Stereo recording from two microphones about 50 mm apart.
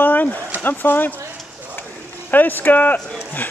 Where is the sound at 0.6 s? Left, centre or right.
Left.